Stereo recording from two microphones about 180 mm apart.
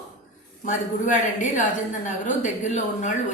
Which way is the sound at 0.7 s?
45° left (ahead or behind).